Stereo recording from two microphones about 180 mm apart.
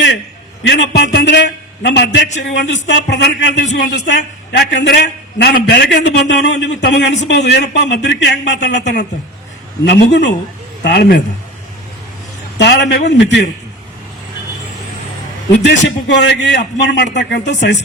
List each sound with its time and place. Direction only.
0.7 s a man's voice: 75° left (ahead or behind)
12.5 s a man's voice: 70° left (ahead or behind)
15.5 s a man's voice: 90° left; by 17.7 s 75° left (ahead or behind)